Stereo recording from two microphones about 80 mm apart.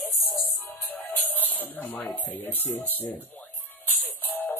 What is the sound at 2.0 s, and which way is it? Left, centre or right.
Speech, left.